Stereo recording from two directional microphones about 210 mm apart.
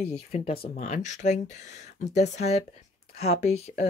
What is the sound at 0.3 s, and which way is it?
Speech, 30° left (ahead or behind).